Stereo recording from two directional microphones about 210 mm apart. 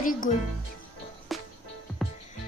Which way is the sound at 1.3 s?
Centre (ahead or behind).